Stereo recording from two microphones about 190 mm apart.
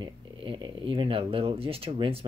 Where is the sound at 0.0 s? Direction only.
25° right (ahead or behind).